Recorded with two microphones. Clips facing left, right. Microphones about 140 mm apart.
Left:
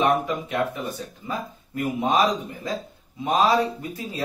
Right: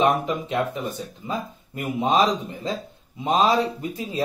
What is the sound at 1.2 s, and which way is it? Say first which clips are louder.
Speech: right 2 dB; 25° right (ahead or behind).